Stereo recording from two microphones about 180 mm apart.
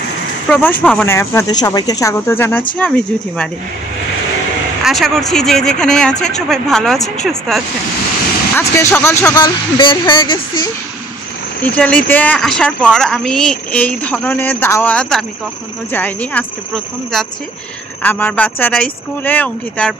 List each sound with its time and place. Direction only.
0.5 s speech: 10° left (ahead or behind)
4.8 s speech: centre (ahead or behind)
8.5 s speech: 15° left (ahead or behind)
11.7 s speech: 5° left (ahead or behind)